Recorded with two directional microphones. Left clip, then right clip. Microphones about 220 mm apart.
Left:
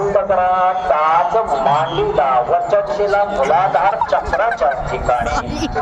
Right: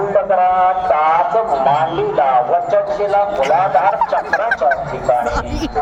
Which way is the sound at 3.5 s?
50° left (ahead or behind).